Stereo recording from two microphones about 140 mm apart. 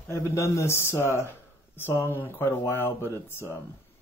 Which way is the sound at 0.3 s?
20° left (ahead or behind).